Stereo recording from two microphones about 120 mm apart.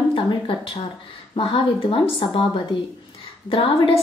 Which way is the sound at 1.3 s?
50° left (ahead or behind).